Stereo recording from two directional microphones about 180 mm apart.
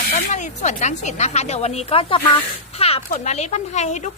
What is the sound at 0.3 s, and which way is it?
Speech, 40° left (ahead or behind).